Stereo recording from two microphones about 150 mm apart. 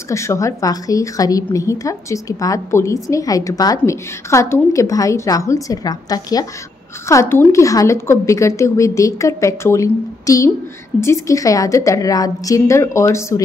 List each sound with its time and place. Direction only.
0.1 s a woman's voice: 20° left (ahead or behind)